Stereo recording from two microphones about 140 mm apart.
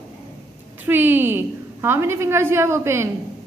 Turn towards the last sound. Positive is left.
turn(degrees=-20)  # may be behind; listen again after turning